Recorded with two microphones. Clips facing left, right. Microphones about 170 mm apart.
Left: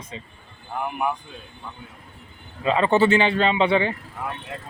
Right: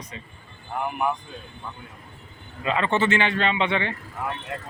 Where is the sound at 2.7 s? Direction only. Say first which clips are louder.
Left 5 dB; 35° left (ahead or behind).